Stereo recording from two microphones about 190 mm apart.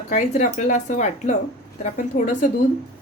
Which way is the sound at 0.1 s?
35° left (ahead or behind).